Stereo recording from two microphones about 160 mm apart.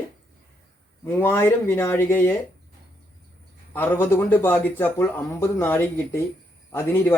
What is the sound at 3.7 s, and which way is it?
Speech, 10° left (ahead or behind).